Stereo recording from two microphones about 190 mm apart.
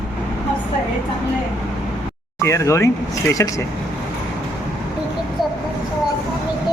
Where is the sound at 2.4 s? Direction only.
15° left (ahead or behind).